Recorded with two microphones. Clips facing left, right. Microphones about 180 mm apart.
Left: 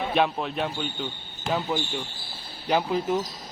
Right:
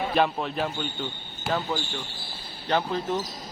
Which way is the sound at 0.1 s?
Centre (ahead or behind).